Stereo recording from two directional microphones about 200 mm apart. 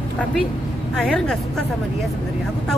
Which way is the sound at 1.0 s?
5° left (ahead or behind).